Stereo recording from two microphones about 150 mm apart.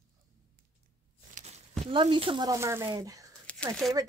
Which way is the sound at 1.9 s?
35° right (ahead or behind).